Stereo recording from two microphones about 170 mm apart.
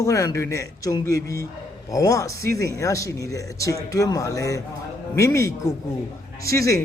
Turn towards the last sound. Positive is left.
turn(degrees=20)  # may be behind; listen again after turning